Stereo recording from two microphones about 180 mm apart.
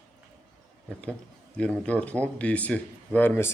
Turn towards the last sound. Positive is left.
turn(degrees=10)  # may be behind; listen again after turning